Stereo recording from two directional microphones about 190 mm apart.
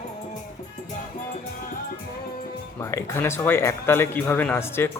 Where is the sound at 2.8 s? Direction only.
15° left (ahead or behind).